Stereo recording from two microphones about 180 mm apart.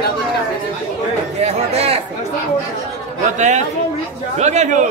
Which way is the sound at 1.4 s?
35° right (ahead or behind).